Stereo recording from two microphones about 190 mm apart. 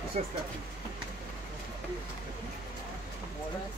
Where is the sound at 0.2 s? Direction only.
35° right (ahead or behind).